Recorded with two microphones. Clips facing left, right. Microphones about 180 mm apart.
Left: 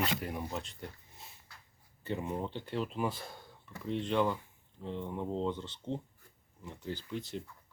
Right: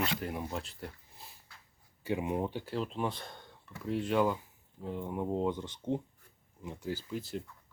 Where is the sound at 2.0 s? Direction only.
10° right (ahead or behind).